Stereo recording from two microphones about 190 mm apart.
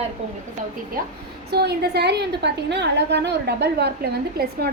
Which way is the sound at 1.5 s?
55° right (ahead or behind).